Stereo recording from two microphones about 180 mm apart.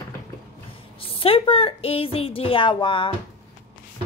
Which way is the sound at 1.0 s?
30° left (ahead or behind).